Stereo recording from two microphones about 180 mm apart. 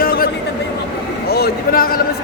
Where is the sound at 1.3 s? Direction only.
55° left (ahead or behind).